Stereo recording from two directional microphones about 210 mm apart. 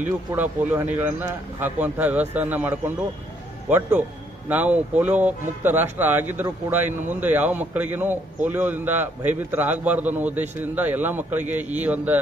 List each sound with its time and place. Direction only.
0.0 s speech: 10° right (ahead or behind)